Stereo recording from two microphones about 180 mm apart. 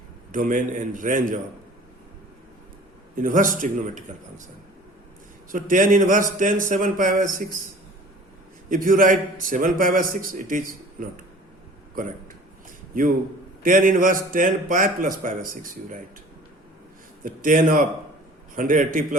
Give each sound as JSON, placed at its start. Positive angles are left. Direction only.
{"t": 0.3, "sound": "a man's voice", "side_deg": -50}
{"t": 3.2, "sound": "a man's voice", "side_deg": -45}
{"t": 5.5, "sound": "a man's voice", "side_deg": -50}
{"t": 8.7, "sound": "a man's voice", "side_deg": -50}
{"t": 13.6, "sound": "a man's voice", "side_deg": -50}
{"t": 17.2, "sound": "a man's voice", "side_deg": -50}